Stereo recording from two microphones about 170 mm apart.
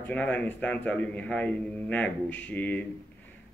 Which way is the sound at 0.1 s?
10° left (ahead or behind).